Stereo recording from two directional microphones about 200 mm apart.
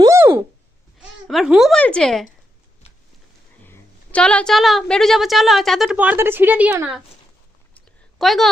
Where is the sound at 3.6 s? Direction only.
10° left (ahead or behind); by 7.0 s 10° right (ahead or behind).